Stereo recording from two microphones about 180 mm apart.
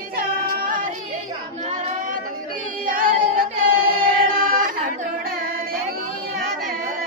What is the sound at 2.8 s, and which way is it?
Choir, 50° right (ahead or behind).